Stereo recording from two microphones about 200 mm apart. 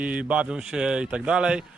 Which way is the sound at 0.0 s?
5° right (ahead or behind).